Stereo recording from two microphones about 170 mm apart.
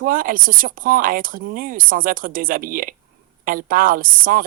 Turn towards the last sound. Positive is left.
turn(degrees=-55)  # may be behind; listen again after turning